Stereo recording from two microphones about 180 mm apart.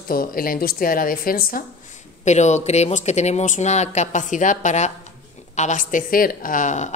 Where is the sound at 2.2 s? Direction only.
40° left (ahead or behind).